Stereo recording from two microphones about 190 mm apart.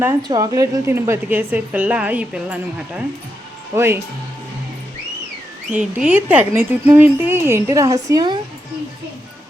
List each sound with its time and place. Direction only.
0.3 s a woman's voice: 20° right (ahead or behind)
5.7 s a woman's voice: 5° right (ahead or behind)